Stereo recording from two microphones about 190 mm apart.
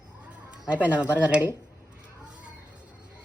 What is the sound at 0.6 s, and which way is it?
Speech, 5° right (ahead or behind).